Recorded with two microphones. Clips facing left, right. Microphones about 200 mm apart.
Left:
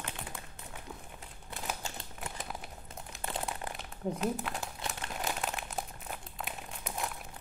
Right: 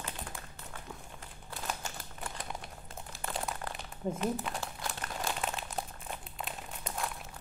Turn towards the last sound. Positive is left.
turn(degrees=5)  # may be behind; listen again after turning